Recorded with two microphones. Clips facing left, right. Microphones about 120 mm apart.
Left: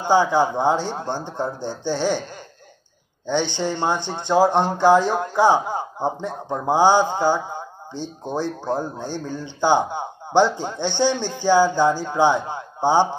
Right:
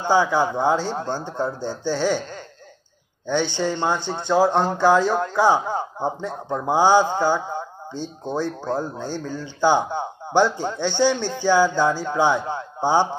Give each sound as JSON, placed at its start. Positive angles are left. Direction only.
{"t": 0.0, "sound": "speech", "side_deg": 15}
{"t": 3.3, "sound": "speech", "side_deg": 15}